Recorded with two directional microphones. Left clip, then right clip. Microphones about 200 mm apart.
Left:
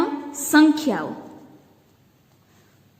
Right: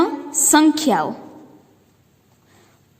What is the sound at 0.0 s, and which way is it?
Music, 40° right (ahead or behind).